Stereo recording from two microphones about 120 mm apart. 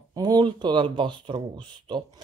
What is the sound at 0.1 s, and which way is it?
Speech, 35° right (ahead or behind).